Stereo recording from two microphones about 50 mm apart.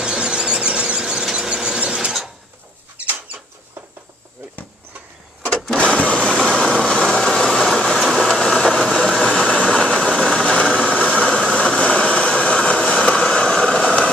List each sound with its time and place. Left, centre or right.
0.0 s squeal: centre
5.8 s printer: left
6.7 s vehicle: centre
9.5 s engine: centre
12.7 s vehicle: centre